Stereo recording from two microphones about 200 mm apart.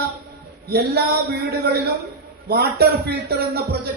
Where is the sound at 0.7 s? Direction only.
50° right (ahead or behind).